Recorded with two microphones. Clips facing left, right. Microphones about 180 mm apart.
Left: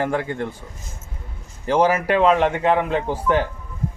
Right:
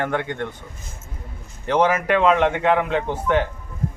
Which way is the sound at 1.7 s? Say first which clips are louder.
Left 1 dB; 30° left (ahead or behind).